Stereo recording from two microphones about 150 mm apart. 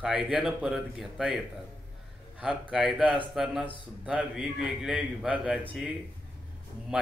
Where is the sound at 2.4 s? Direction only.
5° right (ahead or behind).